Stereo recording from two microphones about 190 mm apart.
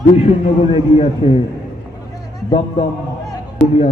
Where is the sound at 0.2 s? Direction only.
30° left (ahead or behind).